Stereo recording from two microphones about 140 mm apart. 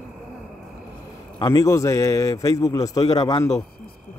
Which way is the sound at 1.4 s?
25° left (ahead or behind).